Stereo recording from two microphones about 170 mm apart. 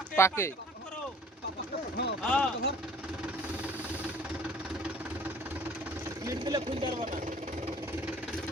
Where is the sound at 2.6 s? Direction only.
70° left (ahead or behind).